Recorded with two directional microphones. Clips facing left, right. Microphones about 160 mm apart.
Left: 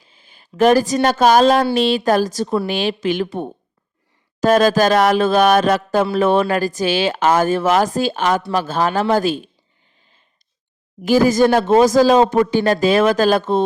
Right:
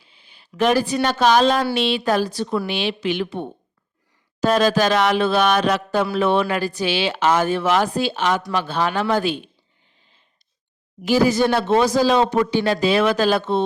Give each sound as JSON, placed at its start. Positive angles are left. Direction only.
{"t": 0.0, "sound": "a woman's voice", "side_deg": 45}
{"t": 11.0, "sound": "speech", "side_deg": 45}